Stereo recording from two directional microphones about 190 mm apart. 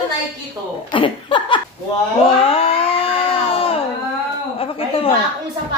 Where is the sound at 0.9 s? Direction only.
25° left (ahead or behind).